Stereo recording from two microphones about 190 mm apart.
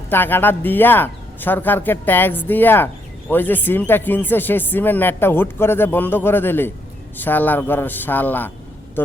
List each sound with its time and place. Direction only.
0.1 s speech: 10° left (ahead or behind)